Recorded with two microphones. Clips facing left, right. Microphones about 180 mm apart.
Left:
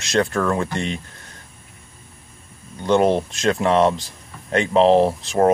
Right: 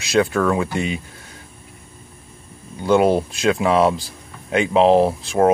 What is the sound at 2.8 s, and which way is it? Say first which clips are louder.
Speech: right 1 dB; 5° right (ahead or behind).